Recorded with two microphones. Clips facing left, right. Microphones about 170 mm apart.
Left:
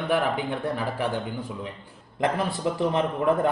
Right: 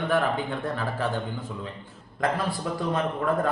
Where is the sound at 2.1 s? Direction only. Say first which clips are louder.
Left 1 dB; 20° left (ahead or behind).